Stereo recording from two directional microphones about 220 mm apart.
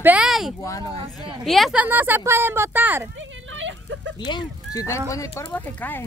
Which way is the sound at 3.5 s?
60° right (ahead or behind).